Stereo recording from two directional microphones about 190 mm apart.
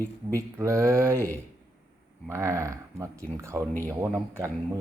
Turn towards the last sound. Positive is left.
turn(degrees=-10)  # may be behind; listen again after turning